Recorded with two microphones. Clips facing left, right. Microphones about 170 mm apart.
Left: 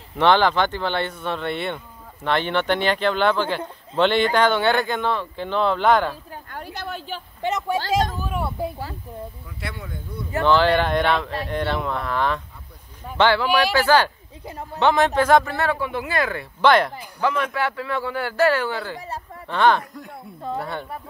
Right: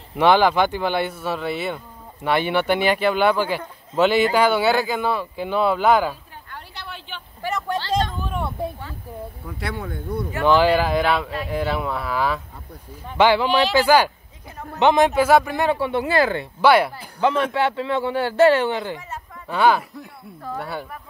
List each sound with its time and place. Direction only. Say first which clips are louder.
0.1 s speech: right 1 dB; 10° right (ahead or behind)
6.5 s a sound: left 5 dB; 45° left (ahead or behind)
7.4 s a woman's voice: left 2 dB; 15° left (ahead or behind)
8.2 s speech: even; 5° left (ahead or behind)
9.5 s speech: right 5 dB; 60° right (ahead or behind)
10.4 s speech: right 1 dB; 10° right (ahead or behind)
13.2 s speech: right 2 dB; 15° right (ahead or behind)
15.8 s speech: right 5 dB; 30° right (ahead or behind)
16.6 s speech: right 1 dB; 10° right (ahead or behind)
17.2 s speech: right 3 dB; 30° right (ahead or behind)
19.4 s speech: even; 5° right (ahead or behind)